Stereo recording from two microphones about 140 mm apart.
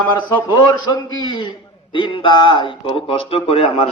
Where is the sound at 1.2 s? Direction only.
35° left (ahead or behind).